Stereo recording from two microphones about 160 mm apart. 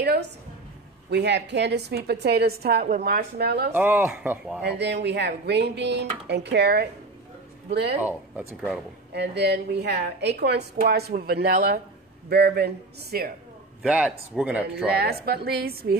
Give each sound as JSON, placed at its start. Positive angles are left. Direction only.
{"t": 0.0, "sound": "a sound", "side_deg": -90}
{"t": 1.1, "sound": "a woman's voice", "side_deg": -90}
{"t": 3.7, "sound": "speech", "side_deg": -10}
{"t": 4.6, "sound": "a woman's voice", "side_deg": -90}
{"t": 8.0, "sound": "speech", "side_deg": -10}
{"t": 9.1, "sound": "a woman's voice", "side_deg": -90}
{"t": 12.3, "sound": "a woman's voice", "side_deg": -90}
{"t": 13.8, "sound": "speech", "side_deg": -5}
{"t": 14.9, "sound": "a woman's voice", "side_deg": -85}